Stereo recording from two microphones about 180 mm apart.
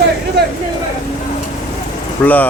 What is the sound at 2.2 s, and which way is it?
Speech, 10° left (ahead or behind).